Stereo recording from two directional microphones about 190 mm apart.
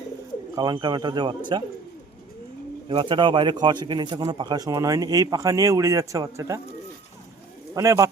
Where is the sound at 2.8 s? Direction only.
25° right (ahead or behind).